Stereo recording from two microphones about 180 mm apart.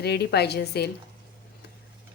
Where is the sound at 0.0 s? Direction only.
65° left (ahead or behind).